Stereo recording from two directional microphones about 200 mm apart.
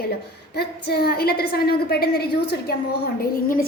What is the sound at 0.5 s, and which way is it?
A woman's voice, 55° left (ahead or behind).